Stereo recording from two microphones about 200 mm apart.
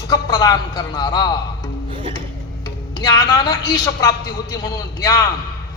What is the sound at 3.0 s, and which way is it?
A man's voice, 20° left (ahead or behind).